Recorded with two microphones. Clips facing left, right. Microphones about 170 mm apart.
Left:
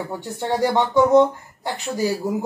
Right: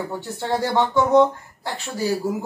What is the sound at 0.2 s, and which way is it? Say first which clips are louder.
Speech: left 4 dB; 15° left (ahead or behind).